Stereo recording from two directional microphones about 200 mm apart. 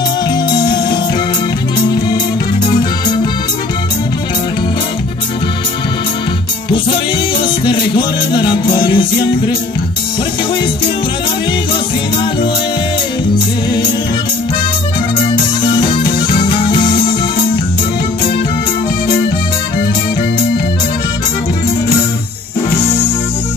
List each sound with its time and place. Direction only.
0.6 s music: 20° left (ahead or behind)
7.6 s music: 25° left (ahead or behind)
15.6 s music: 25° left (ahead or behind)